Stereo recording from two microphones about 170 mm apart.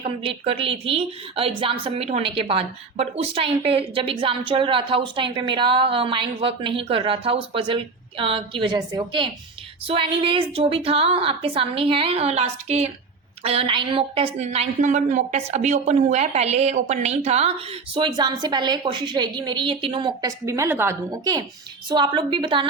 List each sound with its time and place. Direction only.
0.0 s a woman's voice: 35° right (ahead or behind)
20.4 s a woman's voice: 15° right (ahead or behind)